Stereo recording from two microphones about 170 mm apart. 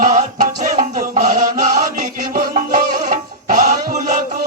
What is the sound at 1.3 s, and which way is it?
Chant, 50° right (ahead or behind).